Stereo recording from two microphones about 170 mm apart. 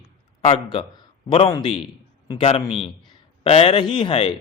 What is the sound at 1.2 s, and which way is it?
A man's voice, 30° left (ahead or behind).